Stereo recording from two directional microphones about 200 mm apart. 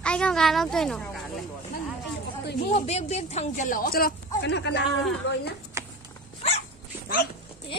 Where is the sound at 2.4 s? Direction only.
55° left (ahead or behind).